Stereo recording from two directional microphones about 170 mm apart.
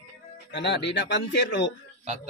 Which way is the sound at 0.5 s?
90° left.